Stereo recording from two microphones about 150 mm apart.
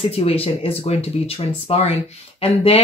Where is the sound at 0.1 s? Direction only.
40° left (ahead or behind).